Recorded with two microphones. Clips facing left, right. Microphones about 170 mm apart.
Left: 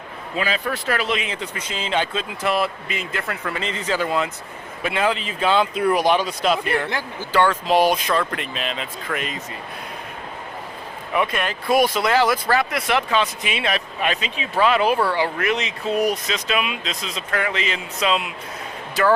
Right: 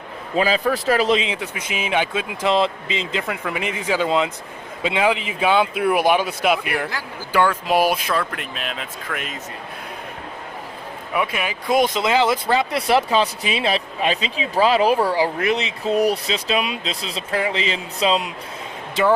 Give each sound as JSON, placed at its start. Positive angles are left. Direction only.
{"t": 0.3, "sound": "speech", "side_deg": -35}
{"t": 1.2, "sound": "speech", "side_deg": -10}
{"t": 11.1, "sound": "speech", "side_deg": -5}
{"t": 11.7, "sound": "speech", "side_deg": -20}
{"t": 12.9, "sound": "speech", "side_deg": -35}